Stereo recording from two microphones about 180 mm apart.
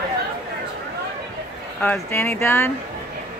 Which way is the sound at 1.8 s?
10° left (ahead or behind).